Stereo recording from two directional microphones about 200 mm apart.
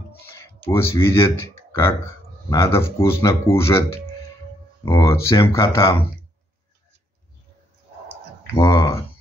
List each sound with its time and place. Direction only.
0.3 s speech: 15° left (ahead or behind)
8.5 s speech: 15° left (ahead or behind)